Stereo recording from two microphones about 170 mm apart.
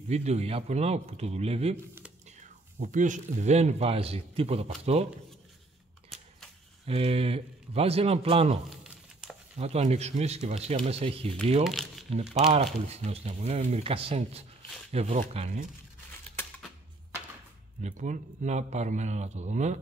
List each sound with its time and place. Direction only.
0.1 s a man's voice: 40° right (ahead or behind)
2.8 s a man's voice: 45° right (ahead or behind)
6.9 s a man's voice: 35° right (ahead or behind)
8.8 s a sound: 5° right (ahead or behind)
9.6 s a man's voice: 40° right (ahead or behind)
11.6 s speech: centre (ahead or behind)
12.4 s a man's voice: 35° right (ahead or behind)
16.3 s a sound: 5° left (ahead or behind)
17.8 s speech: 45° right (ahead or behind)